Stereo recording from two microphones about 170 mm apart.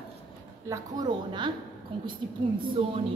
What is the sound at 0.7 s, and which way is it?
A woman's voice, 25° right (ahead or behind).